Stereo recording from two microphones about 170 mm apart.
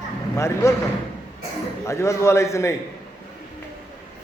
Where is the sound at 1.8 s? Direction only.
15° left (ahead or behind).